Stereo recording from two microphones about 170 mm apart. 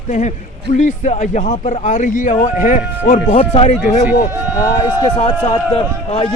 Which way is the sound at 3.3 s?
35° left (ahead or behind).